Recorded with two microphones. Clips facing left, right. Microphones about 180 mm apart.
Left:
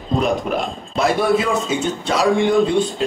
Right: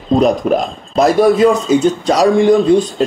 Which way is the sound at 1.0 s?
40° right (ahead or behind).